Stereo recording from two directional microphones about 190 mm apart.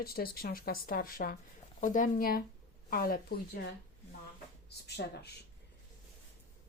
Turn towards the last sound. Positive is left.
turn(degrees=60)  # may be behind; listen again after turning